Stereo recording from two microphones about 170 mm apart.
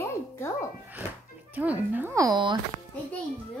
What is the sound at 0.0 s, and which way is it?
Music, 15° left (ahead or behind).